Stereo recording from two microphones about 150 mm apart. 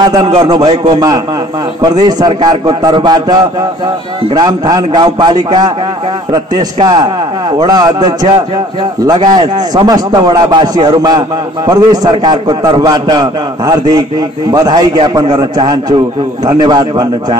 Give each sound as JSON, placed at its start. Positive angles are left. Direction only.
{"t": 0.0, "sound": "a man's voice", "side_deg": -25}